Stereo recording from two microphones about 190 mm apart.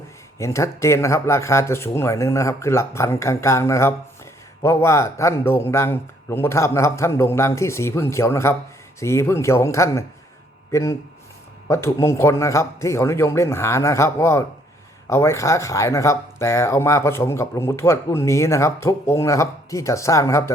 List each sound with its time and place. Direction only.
0.3 s speech: 15° left (ahead or behind)